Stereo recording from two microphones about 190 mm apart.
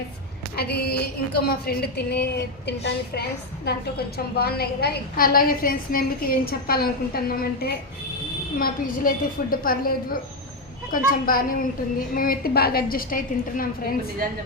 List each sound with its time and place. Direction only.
0.5 s a woman's voice: 55° left (ahead or behind)